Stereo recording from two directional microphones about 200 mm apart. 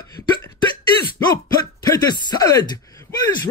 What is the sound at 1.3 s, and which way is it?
Speech, 20° left (ahead or behind).